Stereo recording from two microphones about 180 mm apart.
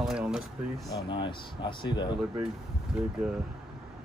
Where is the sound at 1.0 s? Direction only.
25° left (ahead or behind).